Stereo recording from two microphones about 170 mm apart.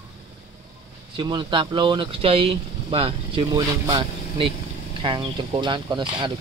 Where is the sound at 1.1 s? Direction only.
25° right (ahead or behind).